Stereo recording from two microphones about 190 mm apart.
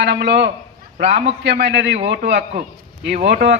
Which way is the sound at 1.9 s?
35° right (ahead or behind).